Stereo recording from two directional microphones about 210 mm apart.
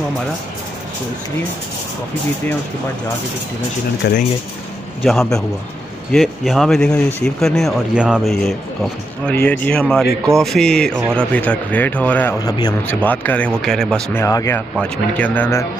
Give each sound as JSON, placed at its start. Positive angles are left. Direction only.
{"t": 4.0, "sound": "speech", "side_deg": 50}
{"t": 5.0, "sound": "speech", "side_deg": 0}
{"t": 14.2, "sound": "speech", "side_deg": 15}